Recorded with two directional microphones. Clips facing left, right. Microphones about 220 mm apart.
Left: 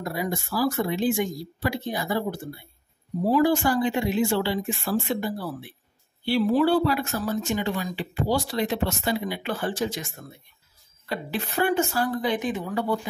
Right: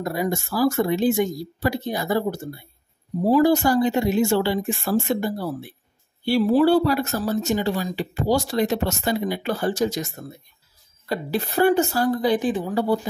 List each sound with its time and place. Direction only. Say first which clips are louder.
0.0 s speech: right 4 dB; 40° right (ahead or behind)